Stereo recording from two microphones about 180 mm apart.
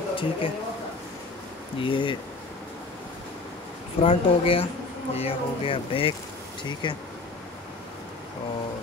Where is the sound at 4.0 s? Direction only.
30° left (ahead or behind).